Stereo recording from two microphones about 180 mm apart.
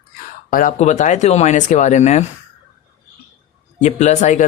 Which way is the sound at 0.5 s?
45° left (ahead or behind).